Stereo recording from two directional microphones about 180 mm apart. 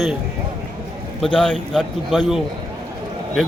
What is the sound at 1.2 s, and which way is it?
A man's voice, 5° left (ahead or behind).